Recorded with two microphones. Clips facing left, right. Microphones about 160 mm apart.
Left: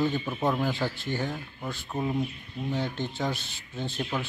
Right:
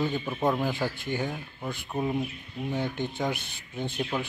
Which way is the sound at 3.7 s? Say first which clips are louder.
Right 1 dB; 20° right (ahead or behind).